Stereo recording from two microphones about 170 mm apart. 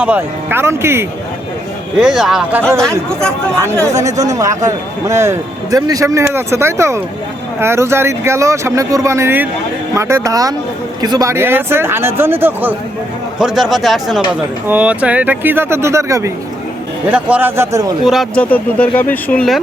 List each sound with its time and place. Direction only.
0.0 s speech: 10° right (ahead or behind)
2.0 s speech: 5° right (ahead or behind)
13.4 s speech: centre (ahead or behind); by 17.9 s 20° right (ahead or behind)
18.0 s speech: centre (ahead or behind)
18.5 s speech: 10° left (ahead or behind)